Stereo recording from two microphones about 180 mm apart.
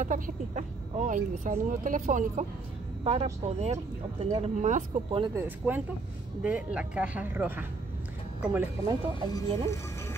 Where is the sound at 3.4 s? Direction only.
35° right (ahead or behind).